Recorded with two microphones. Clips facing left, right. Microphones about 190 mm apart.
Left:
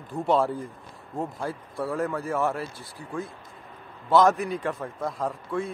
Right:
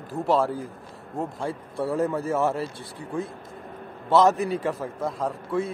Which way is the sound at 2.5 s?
25° right (ahead or behind).